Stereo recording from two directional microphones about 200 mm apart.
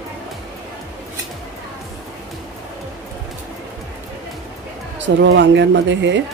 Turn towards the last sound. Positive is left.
turn(degrees=-65)  # may be behind; listen again after turning